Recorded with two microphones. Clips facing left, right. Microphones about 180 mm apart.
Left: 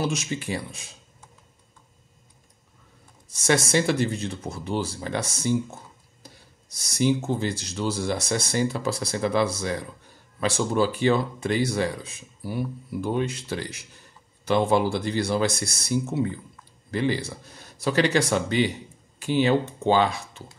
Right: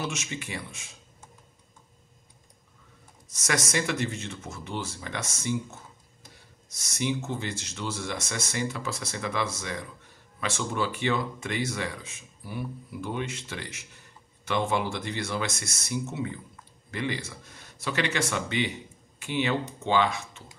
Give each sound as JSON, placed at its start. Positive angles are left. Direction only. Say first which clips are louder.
{"t": 0.0, "sound": "speech", "louder": "left 6 dB", "side_deg": 35}
{"t": 3.3, "sound": "speech", "louder": "left 7 dB", "side_deg": 30}